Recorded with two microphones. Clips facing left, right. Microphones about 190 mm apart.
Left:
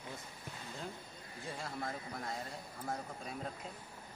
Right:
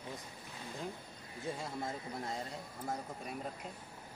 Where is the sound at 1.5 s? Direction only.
20° right (ahead or behind).